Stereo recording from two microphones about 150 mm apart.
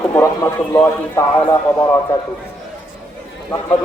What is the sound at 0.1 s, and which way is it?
A man's voice, 15° left (ahead or behind).